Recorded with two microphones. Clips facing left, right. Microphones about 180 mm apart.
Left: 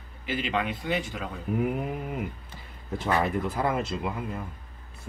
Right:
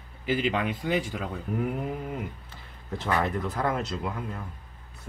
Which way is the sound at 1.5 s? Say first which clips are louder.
Left 2 dB; 10° left (ahead or behind).